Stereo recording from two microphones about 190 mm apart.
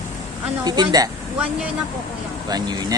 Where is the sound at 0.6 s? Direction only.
20° right (ahead or behind).